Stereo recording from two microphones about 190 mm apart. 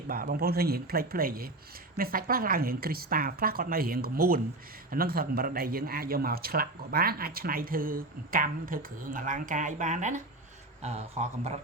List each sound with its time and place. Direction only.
0.1 s speech: 50° right (ahead or behind); by 11.6 s 35° right (ahead or behind)